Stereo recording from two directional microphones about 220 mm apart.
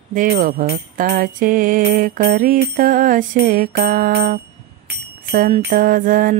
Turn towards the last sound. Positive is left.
turn(degrees=-40)  # may be behind; listen again after turning